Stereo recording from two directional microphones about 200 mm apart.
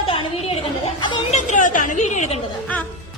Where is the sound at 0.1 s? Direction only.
30° left (ahead or behind).